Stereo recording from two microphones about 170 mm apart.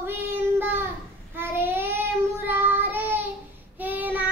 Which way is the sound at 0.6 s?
10° right (ahead or behind).